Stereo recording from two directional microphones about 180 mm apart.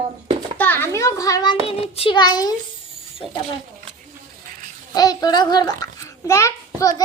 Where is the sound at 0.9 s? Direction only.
15° left (ahead or behind).